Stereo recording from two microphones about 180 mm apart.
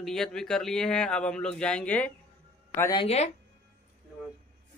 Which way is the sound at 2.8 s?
20° left (ahead or behind).